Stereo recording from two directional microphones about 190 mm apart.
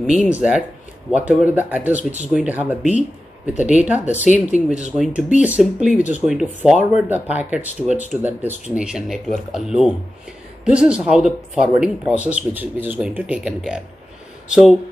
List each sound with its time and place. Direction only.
0.0 s speech: 5° right (ahead or behind)
4.0 s speech: 40° left (ahead or behind)
4.6 s speech: 5° right (ahead or behind)